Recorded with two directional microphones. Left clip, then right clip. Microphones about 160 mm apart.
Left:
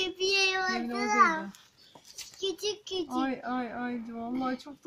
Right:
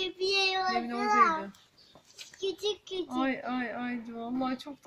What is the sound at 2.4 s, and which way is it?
Speech, 20° left (ahead or behind).